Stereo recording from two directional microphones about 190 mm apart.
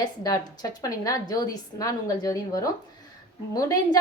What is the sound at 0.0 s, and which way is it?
A woman's voice, 20° left (ahead or behind).